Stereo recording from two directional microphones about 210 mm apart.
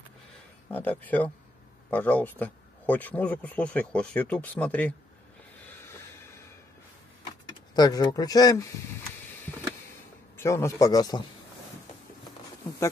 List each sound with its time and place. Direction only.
0.7 s speech: 10° left (ahead or behind)
7.7 s speech: 20° left (ahead or behind)
10.3 s speech: 15° left (ahead or behind)